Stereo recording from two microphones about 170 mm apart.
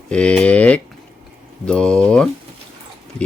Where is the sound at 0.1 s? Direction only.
5° left (ahead or behind).